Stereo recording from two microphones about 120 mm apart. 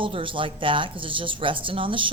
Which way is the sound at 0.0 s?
45° right (ahead or behind).